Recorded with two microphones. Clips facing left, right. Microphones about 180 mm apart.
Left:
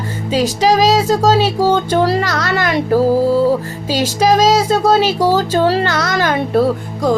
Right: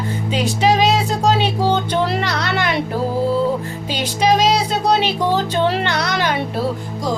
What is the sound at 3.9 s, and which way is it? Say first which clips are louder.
Music: left 4 dB; 45° left (ahead or behind).